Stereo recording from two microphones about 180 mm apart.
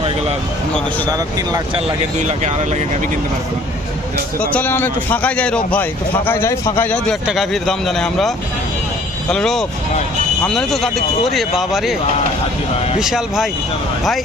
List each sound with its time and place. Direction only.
1.1 s speech: 20° right (ahead or behind)
2.1 s speech: 40° right (ahead or behind)
4.4 s a man's voice: 10° left (ahead or behind)
9.3 s speech: 5° left (ahead or behind)
13.0 s speech: 5° right (ahead or behind)